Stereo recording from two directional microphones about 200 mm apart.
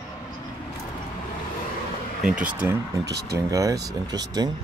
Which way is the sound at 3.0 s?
55° right (ahead or behind).